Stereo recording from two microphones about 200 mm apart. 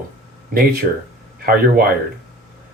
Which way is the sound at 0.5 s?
50° right (ahead or behind).